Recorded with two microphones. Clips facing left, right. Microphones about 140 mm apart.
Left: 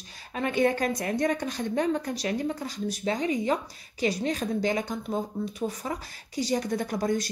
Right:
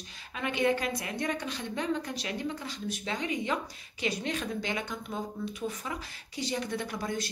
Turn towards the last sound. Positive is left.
turn(degrees=40)  # may be behind; listen again after turning